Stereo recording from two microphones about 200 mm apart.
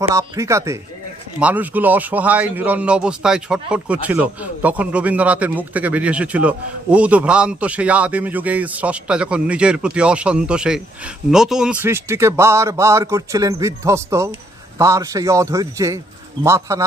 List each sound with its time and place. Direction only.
0.1 s speech: 15° right (ahead or behind)